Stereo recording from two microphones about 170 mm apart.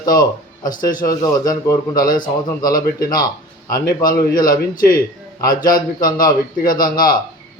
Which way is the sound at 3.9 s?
55° left (ahead or behind).